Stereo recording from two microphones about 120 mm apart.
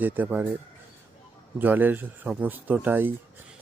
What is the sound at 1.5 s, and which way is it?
Speech, 15° right (ahead or behind).